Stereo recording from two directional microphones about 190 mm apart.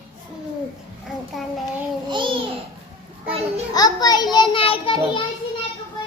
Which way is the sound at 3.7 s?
20° left (ahead or behind).